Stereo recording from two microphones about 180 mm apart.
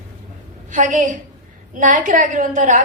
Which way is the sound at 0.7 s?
45° right (ahead or behind).